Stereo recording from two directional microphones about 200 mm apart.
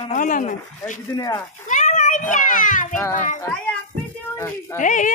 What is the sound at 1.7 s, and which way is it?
A child's voice, 40° left (ahead or behind).